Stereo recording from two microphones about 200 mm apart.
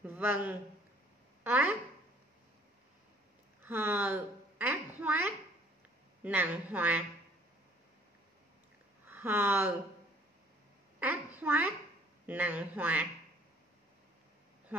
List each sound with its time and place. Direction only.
0.0 s speech: 10° right (ahead or behind)
3.6 s a woman's voice: 10° right (ahead or behind)
9.0 s speech: 10° right (ahead or behind)
11.0 s a woman's voice: 10° right (ahead or behind)
14.7 s a sound: 10° right (ahead or behind)